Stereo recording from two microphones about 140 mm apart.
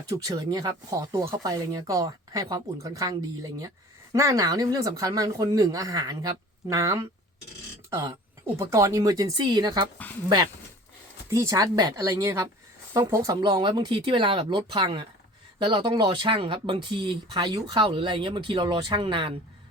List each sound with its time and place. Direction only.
0.0 s speech: 25° right (ahead or behind)